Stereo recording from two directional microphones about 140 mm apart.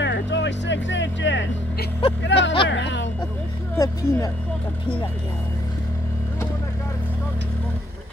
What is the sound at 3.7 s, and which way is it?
Speech, 25° left (ahead or behind).